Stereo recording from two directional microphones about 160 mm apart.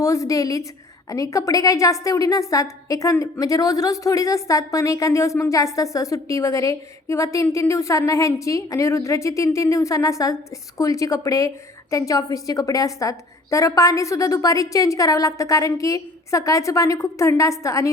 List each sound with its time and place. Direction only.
0.0 s a woman's voice: 20° left (ahead or behind)